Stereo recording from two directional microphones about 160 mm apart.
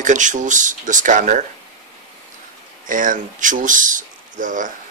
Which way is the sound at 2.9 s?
55° right (ahead or behind).